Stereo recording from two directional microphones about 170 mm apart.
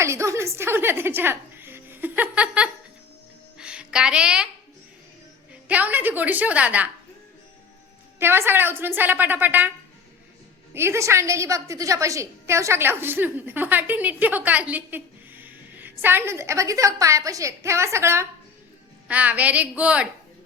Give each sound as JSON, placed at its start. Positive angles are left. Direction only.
{"t": 0.0, "sound": "speech", "side_deg": -15}
{"t": 3.6, "sound": "a sound", "side_deg": -5}
{"t": 5.6, "sound": "a woman's voice", "side_deg": -10}
{"t": 8.2, "sound": "a woman's voice", "side_deg": -15}
{"t": 10.8, "sound": "a woman's voice", "side_deg": -15}